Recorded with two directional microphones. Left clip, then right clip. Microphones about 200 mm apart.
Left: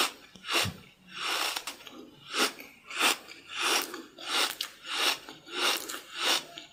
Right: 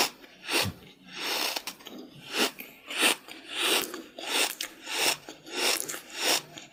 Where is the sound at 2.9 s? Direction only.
35° right (ahead or behind).